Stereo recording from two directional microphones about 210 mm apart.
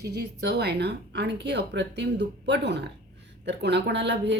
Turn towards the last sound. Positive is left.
turn(degrees=-55)  # may be behind; listen again after turning